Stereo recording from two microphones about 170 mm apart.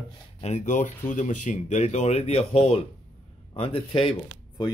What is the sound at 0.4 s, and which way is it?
Speech, 40° left (ahead or behind).